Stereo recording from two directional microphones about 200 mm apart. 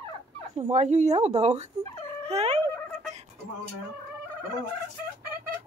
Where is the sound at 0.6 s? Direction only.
35° right (ahead or behind).